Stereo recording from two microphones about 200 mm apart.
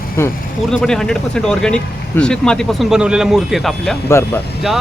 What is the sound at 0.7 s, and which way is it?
Speech, 5° left (ahead or behind).